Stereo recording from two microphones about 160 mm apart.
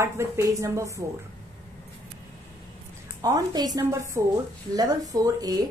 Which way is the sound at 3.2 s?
25° right (ahead or behind).